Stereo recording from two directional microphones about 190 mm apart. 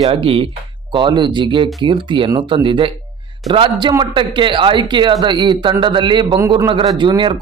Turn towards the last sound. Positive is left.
turn(degrees=-25)  # may be behind; listen again after turning